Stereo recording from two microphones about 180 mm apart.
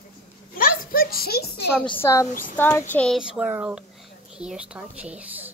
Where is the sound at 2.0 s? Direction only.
15° left (ahead or behind).